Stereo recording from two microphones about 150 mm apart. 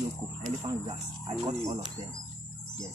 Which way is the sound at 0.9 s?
30° right (ahead or behind).